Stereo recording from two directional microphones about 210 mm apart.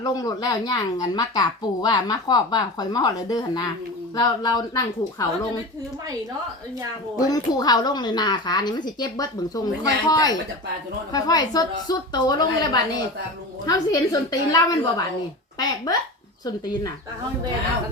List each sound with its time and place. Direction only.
0.0 s speech: 20° left (ahead or behind)
7.2 s a woman's voice: 15° left (ahead or behind)